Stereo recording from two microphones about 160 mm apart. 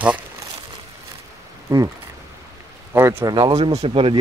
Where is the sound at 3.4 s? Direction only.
40° right (ahead or behind).